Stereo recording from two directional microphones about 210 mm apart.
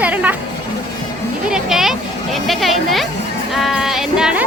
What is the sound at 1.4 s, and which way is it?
A woman's voice, centre (ahead or behind).